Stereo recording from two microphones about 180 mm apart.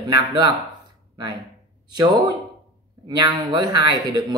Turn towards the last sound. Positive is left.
turn(degrees=-25)  # may be behind; listen again after turning